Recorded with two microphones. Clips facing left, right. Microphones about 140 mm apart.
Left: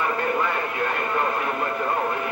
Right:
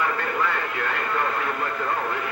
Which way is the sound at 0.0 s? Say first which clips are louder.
Left 2 dB; 25° left (ahead or behind).